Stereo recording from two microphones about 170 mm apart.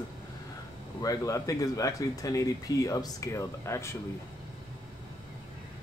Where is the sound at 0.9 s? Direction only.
20° left (ahead or behind).